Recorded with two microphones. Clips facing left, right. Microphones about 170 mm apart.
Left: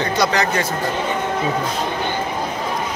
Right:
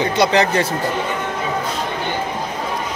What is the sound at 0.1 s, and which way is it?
Speech, 25° right (ahead or behind).